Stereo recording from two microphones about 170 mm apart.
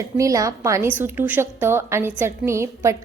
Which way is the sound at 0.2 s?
20° right (ahead or behind).